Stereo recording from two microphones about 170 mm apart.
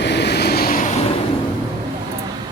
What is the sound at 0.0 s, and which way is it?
Vehicle, 85° left.